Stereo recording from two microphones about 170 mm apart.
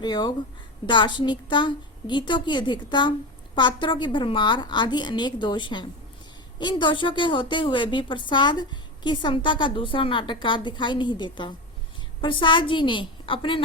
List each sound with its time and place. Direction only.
0.0 s a woman's voice: 25° left (ahead or behind)